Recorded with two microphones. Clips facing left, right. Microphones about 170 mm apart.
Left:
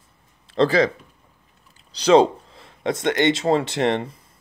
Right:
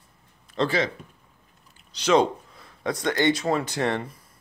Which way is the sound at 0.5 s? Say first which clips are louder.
Left 7 dB; 35° left (ahead or behind).